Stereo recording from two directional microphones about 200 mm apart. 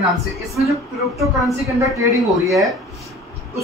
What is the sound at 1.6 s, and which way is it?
Speech, 15° right (ahead or behind).